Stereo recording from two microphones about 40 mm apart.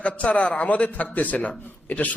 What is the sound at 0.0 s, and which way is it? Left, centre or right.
Speech, left.